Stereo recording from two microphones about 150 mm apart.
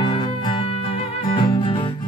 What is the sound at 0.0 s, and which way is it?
Music, 30° left (ahead or behind).